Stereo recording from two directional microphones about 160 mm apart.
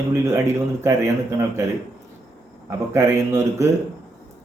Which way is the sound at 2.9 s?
20° right (ahead or behind).